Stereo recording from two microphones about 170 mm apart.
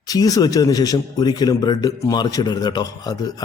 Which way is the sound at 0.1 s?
20° left (ahead or behind).